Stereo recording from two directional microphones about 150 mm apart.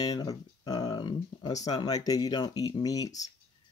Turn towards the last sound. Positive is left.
turn(degrees=25)  # may be behind; listen again after turning